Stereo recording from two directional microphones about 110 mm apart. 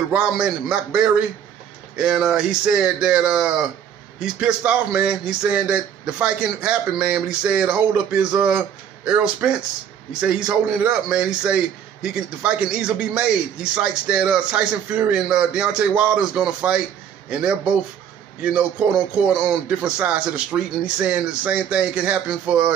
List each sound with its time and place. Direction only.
0.1 s a man's voice: 10° right (ahead or behind)